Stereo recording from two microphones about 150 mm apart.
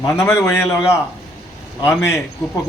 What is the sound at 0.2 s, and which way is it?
Speech, 15° left (ahead or behind).